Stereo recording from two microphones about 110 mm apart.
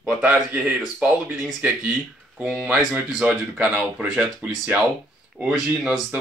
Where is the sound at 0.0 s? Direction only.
10° right (ahead or behind).